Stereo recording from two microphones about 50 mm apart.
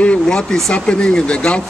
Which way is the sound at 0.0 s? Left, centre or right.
Left.